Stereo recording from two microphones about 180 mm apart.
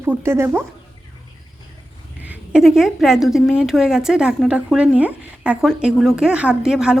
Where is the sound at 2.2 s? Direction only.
5° right (ahead or behind).